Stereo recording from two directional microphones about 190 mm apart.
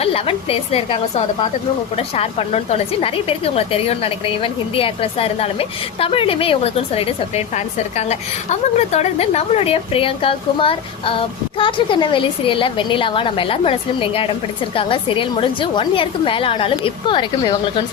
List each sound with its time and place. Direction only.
0.0 s a woman's voice: 30° left (ahead or behind)